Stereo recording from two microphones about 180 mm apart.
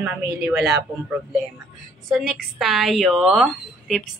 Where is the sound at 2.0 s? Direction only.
Centre (ahead or behind).